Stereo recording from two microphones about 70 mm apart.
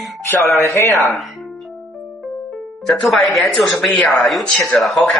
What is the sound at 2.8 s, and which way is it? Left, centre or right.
Speech, centre.